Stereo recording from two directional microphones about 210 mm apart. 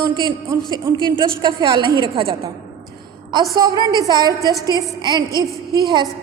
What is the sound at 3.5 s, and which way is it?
A woman's voice, 20° right (ahead or behind).